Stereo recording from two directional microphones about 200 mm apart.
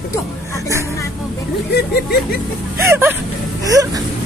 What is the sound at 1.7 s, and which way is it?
Speech, 55° left (ahead or behind).